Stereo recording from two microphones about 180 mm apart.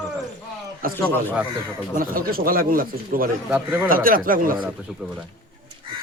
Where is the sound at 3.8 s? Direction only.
50° right (ahead or behind).